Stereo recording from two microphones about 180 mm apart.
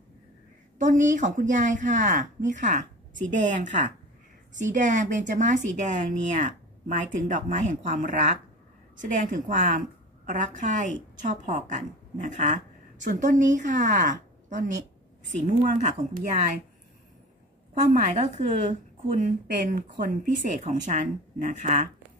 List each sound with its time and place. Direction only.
0.7 s a woman's voice: 45° right (ahead or behind)
18.0 s a woman's voice: 40° right (ahead or behind); by 20.1 s 55° right (ahead or behind)
20.6 s speech: 45° right (ahead or behind)